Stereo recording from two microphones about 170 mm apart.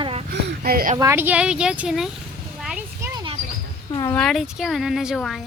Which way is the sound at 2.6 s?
5° right (ahead or behind).